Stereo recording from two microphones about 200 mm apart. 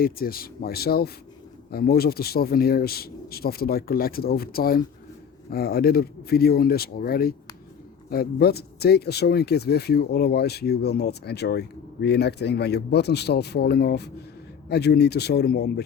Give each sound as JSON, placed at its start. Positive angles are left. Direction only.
{"t": 0.0, "sound": "a man's voice", "side_deg": 50}